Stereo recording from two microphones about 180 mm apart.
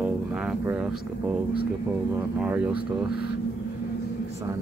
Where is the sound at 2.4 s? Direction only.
5° right (ahead or behind).